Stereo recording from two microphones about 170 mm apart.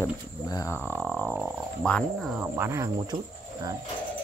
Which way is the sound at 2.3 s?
10° right (ahead or behind).